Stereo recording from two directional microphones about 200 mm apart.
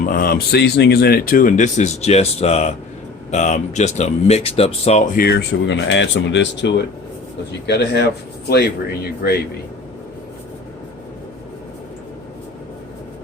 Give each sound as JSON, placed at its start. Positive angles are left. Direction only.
{"t": 0.0, "sound": "speech", "side_deg": 45}
{"t": 5.1, "sound": "speech", "side_deg": 55}